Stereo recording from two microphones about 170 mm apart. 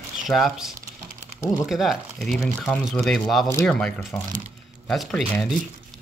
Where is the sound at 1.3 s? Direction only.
20° left (ahead or behind).